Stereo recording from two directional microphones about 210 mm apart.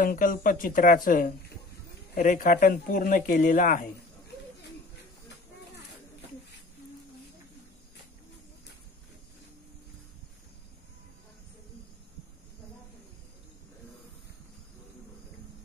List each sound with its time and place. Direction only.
0.0 s speech: 40° left (ahead or behind)